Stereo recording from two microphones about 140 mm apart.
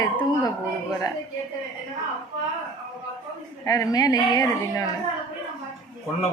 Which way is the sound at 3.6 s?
25° left (ahead or behind).